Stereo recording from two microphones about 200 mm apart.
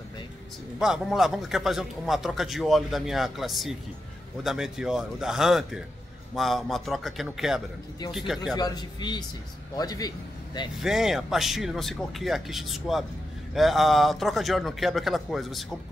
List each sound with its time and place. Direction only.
0.7 s a man's voice: centre (ahead or behind)
8.5 s a man's voice: 20° left (ahead or behind)
10.8 s a man's voice: centre (ahead or behind)